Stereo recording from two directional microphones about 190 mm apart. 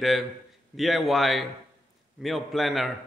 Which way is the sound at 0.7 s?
Centre (ahead or behind).